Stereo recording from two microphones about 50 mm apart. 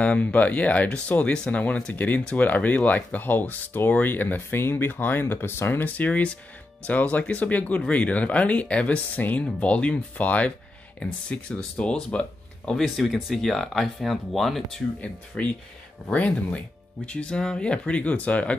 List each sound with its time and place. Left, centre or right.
0.0 s speech: left
5.9 s speech: left
12.7 s speech: centre
15.4 s speech: left